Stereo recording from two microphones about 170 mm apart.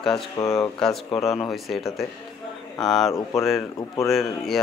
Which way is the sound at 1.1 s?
30° left (ahead or behind).